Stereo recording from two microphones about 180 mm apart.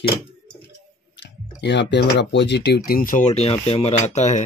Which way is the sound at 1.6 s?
75° left (ahead or behind).